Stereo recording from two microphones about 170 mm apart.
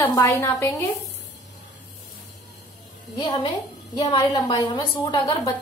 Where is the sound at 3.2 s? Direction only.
25° left (ahead or behind).